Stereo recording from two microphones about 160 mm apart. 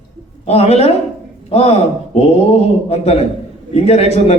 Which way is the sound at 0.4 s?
40° left (ahead or behind).